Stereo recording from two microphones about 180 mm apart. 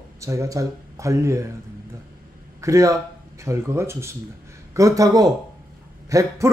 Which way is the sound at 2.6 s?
15° right (ahead or behind).